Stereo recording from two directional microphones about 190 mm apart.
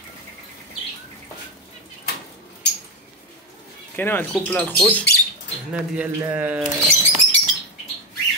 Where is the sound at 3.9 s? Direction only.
10° left (ahead or behind).